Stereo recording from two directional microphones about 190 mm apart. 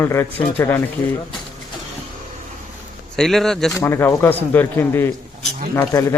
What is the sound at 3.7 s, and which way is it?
A man's voice, 15° left (ahead or behind).